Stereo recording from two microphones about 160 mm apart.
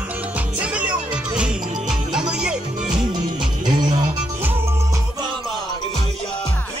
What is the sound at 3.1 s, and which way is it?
Music, 25° right (ahead or behind).